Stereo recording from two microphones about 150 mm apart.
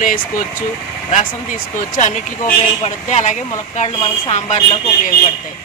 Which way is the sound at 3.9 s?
35° left (ahead or behind).